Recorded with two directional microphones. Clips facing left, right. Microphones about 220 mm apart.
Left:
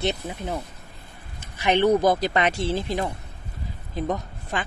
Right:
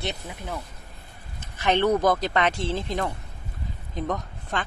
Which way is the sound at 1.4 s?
10° left (ahead or behind).